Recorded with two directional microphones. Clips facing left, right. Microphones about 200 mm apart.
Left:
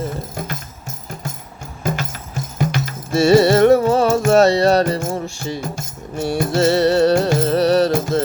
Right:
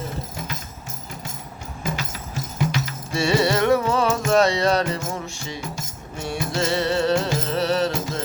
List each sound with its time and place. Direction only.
2.6 s music: 50° left (ahead or behind)